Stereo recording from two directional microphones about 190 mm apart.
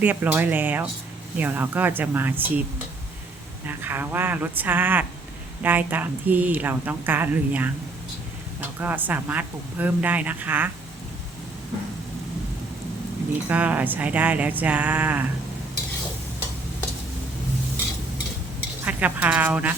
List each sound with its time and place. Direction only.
0.0 s a woman's voice: 10° right (ahead or behind)
8.8 s a woman's voice: 10° right (ahead or behind)
13.5 s a woman's voice: 10° right (ahead or behind)
18.9 s a woman's voice: 10° right (ahead or behind)